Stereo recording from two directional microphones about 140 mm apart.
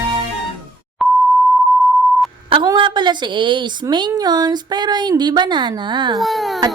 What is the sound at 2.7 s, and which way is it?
Speech, 35° right (ahead or behind).